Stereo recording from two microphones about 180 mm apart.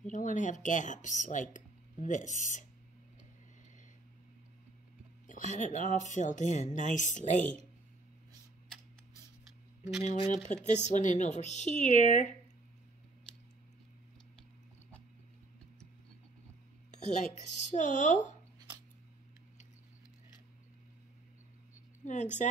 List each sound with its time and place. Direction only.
0.0 s speech: 45° left (ahead or behind)
5.2 s speech: 45° left (ahead or behind)
10.0 s speech: 35° left (ahead or behind)
16.9 s speech: 40° left (ahead or behind)
22.0 s speech: 40° left (ahead or behind)